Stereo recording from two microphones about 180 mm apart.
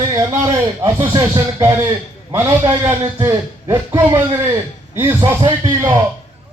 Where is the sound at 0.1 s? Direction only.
20° right (ahead or behind).